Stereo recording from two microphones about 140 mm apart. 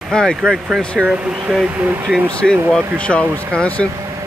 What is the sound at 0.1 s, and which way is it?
Speech, 5° left (ahead or behind).